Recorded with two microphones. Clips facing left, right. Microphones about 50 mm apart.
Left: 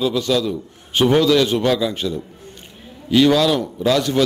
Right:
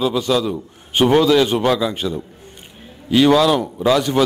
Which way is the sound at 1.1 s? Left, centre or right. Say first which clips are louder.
Right 1 dB; centre.